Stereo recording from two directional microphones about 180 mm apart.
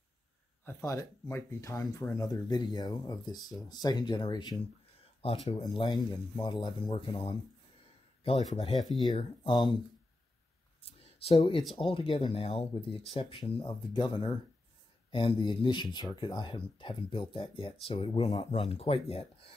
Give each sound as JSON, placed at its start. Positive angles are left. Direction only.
{"t": 0.7, "sound": "speech", "side_deg": 15}
{"t": 8.7, "sound": "speech", "side_deg": 0}
{"t": 9.4, "sound": "speech", "side_deg": 25}
{"t": 10.8, "sound": "a sound", "side_deg": 35}
{"t": 11.7, "sound": "speech", "side_deg": 30}